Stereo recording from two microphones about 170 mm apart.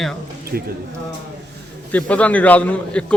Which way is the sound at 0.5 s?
75° right (ahead or behind).